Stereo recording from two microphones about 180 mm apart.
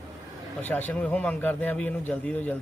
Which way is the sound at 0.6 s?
10° left (ahead or behind).